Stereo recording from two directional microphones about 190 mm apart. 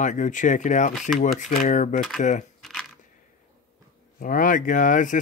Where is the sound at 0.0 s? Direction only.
40° left (ahead or behind).